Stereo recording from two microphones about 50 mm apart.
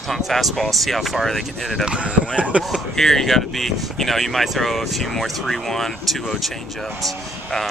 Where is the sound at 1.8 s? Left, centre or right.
Right.